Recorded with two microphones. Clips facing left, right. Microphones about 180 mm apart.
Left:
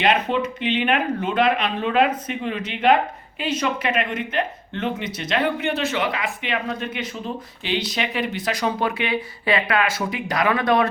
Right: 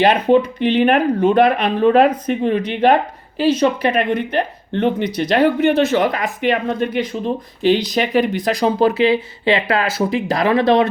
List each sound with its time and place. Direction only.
0.3 s speech: 40° right (ahead or behind)
7.6 s speech: 45° right (ahead or behind); by 10.8 s 25° right (ahead or behind)